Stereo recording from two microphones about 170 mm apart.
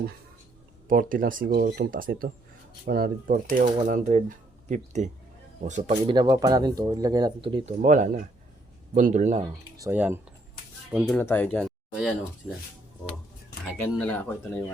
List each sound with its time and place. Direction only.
0.9 s speech: 55° right (ahead or behind)
6.1 s speech: 25° right (ahead or behind)
7.8 s speech: 50° right (ahead or behind)
9.4 s speech: 20° right (ahead or behind)
11.1 s speech: 10° left (ahead or behind)
14.0 s speech: 10° left (ahead or behind)